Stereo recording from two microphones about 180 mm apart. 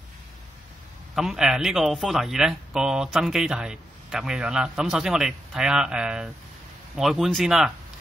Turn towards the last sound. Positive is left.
turn(degrees=-5)  # may be behind; listen again after turning